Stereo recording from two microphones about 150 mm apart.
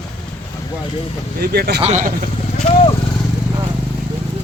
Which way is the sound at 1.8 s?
55° right (ahead or behind).